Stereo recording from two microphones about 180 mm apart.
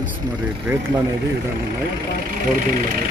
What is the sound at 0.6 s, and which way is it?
Speech, 10° right (ahead or behind).